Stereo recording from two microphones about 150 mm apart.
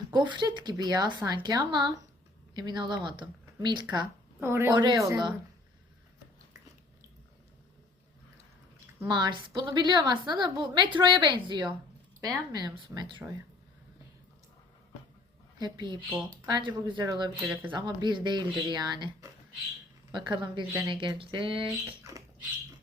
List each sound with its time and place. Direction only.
0.1 s a woman's voice: 30° right (ahead or behind)
4.4 s a woman's voice: 15° right (ahead or behind)
4.7 s a woman's voice: 30° right (ahead or behind)
9.0 s a woman's voice: 30° right (ahead or behind)
15.5 s a woman's voice: 30° right (ahead or behind)
17.3 s speech: 10° right (ahead or behind)
17.7 s a woman's voice: 30° right (ahead or behind)